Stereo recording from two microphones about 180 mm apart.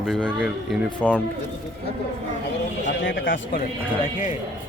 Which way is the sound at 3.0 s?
90° left.